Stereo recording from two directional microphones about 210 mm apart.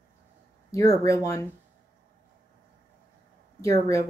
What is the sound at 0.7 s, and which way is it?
Speech, 15° left (ahead or behind).